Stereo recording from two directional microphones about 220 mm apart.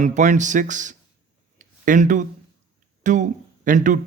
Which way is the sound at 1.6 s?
35° right (ahead or behind).